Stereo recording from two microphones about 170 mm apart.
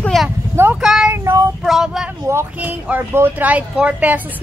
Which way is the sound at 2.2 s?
15° right (ahead or behind).